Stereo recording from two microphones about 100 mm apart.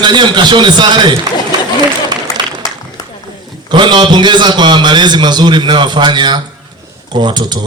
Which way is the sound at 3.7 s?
50° right (ahead or behind).